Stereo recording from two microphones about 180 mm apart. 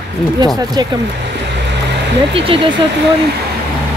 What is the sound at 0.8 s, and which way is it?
Speech, 25° right (ahead or behind).